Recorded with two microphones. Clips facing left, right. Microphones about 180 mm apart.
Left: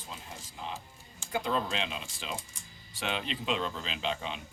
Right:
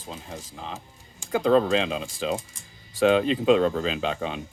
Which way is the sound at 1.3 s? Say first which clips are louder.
Right 10 dB; 90° right.